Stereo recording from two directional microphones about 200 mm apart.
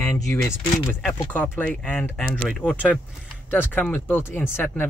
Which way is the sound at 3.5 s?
10° left (ahead or behind).